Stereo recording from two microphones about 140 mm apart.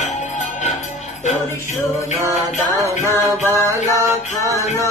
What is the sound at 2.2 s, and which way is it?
Music, 20° right (ahead or behind).